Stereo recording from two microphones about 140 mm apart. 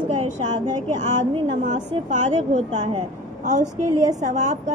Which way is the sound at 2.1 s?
60° right (ahead or behind).